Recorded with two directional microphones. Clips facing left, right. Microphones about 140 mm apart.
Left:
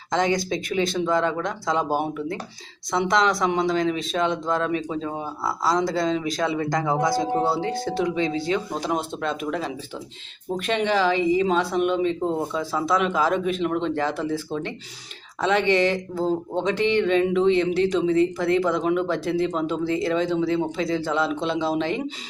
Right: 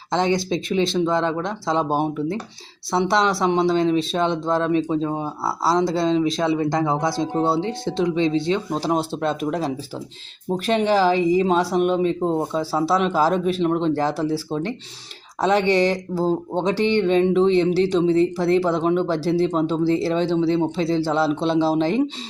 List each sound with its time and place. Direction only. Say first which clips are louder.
0.1 s speech: right 2 dB; 30° right (ahead or behind)